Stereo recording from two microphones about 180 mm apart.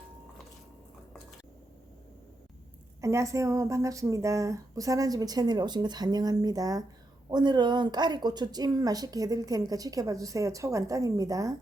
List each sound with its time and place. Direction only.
3.0 s speech: 15° right (ahead or behind)